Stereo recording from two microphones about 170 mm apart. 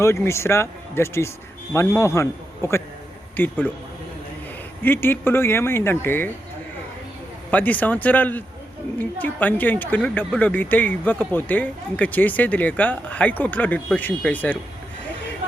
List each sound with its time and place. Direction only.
0.0 s speech: 15° left (ahead or behind)
4.8 s speech: 10° left (ahead or behind)
7.5 s speech: 10° left (ahead or behind)